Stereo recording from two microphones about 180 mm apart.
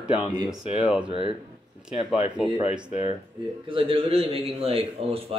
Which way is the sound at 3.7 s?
30° right (ahead or behind).